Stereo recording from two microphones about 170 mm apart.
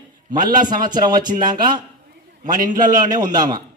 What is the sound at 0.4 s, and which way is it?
Speech, 50° right (ahead or behind).